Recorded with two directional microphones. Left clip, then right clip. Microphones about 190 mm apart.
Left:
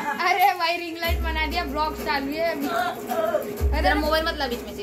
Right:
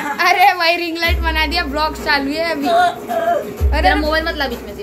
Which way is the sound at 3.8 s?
15° left (ahead or behind).